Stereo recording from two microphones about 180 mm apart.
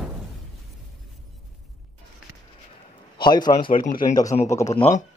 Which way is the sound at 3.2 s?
25° left (ahead or behind).